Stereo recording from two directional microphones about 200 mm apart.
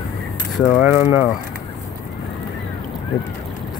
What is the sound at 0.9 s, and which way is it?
Speech, 10° right (ahead or behind).